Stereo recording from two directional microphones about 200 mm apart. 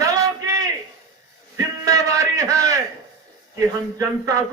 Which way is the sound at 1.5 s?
15° right (ahead or behind).